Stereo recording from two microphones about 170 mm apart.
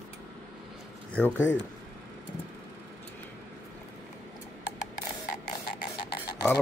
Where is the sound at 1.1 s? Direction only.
10° left (ahead or behind).